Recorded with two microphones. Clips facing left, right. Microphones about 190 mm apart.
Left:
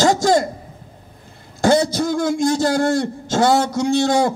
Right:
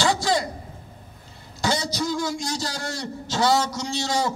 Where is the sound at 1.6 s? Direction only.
50° left (ahead or behind).